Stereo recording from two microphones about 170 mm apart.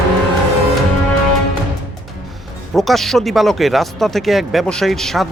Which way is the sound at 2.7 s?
Centre (ahead or behind).